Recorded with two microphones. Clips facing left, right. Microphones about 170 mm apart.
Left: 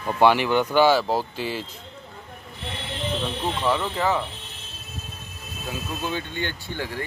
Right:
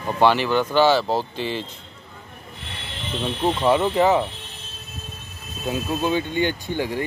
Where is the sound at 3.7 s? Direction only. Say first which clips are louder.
Right 7 dB; 20° right (ahead or behind).